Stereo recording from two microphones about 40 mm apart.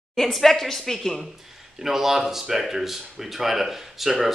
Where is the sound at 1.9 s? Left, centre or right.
Centre.